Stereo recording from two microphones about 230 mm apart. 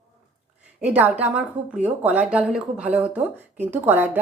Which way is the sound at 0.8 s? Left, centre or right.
Centre.